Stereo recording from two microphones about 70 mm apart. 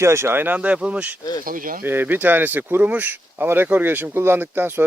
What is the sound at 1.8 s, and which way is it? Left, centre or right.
Speech, right.